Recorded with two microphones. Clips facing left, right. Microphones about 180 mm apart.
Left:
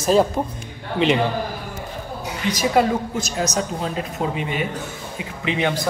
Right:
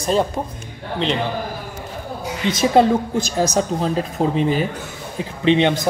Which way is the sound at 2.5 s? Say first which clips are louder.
Right 4 dB; 30° right (ahead or behind).